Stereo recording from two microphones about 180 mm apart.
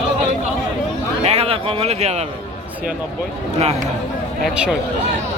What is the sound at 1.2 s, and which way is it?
A man's voice, 35° right (ahead or behind).